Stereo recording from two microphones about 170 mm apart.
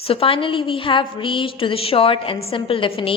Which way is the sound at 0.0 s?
35° left (ahead or behind).